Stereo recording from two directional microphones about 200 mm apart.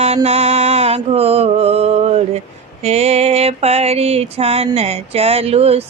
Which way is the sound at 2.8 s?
30° right (ahead or behind).